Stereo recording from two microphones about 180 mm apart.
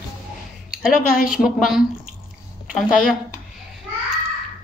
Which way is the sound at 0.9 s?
50° left (ahead or behind).